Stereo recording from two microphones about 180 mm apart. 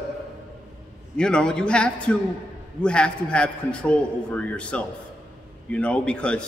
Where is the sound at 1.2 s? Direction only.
5° left (ahead or behind).